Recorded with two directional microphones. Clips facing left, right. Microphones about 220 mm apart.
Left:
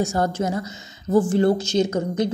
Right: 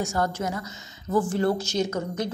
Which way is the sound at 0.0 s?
25° left (ahead or behind).